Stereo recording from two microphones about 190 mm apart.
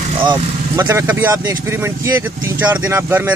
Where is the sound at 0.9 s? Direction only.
10° right (ahead or behind).